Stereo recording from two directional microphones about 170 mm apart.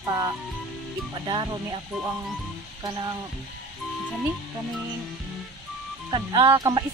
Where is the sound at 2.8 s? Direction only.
20° right (ahead or behind).